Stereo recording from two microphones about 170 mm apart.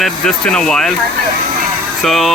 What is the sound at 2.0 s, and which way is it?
Speech, centre (ahead or behind).